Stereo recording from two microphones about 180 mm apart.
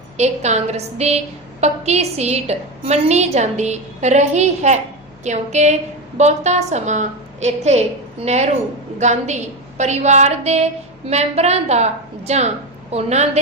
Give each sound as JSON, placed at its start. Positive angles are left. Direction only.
{"t": 0.2, "sound": "a woman's voice", "side_deg": -40}